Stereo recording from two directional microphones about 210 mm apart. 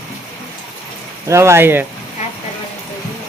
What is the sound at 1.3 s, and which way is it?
Speech, 15° right (ahead or behind).